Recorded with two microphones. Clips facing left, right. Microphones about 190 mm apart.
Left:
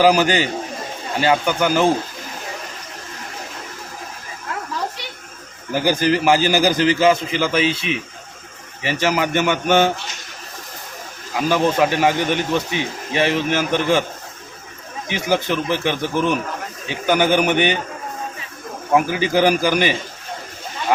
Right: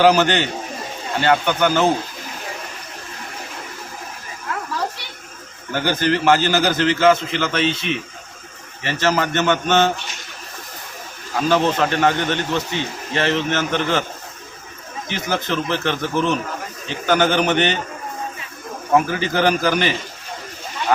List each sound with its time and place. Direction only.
0.0 s a man's voice: 10° left (ahead or behind)
5.7 s a man's voice: 10° left (ahead or behind)
11.4 s a man's voice: 10° left (ahead or behind)
15.1 s a man's voice: 10° left (ahead or behind)
18.9 s a man's voice: 10° left (ahead or behind)